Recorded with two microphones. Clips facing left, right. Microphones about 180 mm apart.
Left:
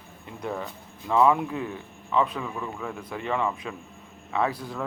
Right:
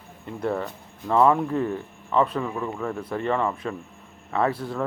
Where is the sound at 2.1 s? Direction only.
35° right (ahead or behind).